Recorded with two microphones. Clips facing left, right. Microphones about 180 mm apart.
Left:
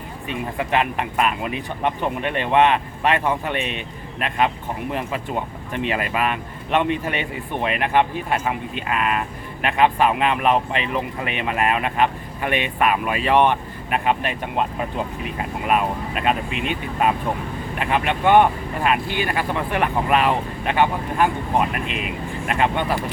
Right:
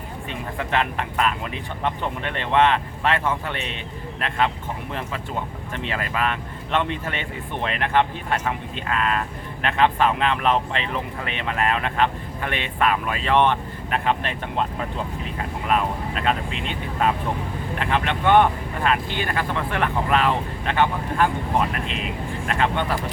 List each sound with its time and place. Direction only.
0.3 s speech: 15° left (ahead or behind)